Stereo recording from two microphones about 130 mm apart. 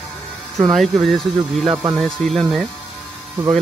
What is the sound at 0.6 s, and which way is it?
Speech, centre (ahead or behind).